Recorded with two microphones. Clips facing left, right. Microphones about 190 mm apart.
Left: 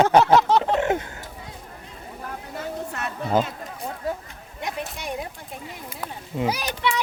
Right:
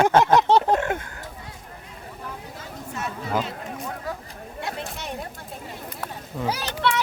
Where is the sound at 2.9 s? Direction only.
60° left (ahead or behind).